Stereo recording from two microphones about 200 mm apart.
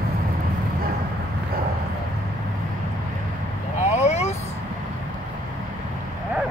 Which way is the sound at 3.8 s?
35° left (ahead or behind).